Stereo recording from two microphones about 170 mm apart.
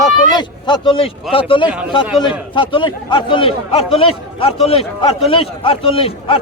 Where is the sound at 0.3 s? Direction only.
25° left (ahead or behind).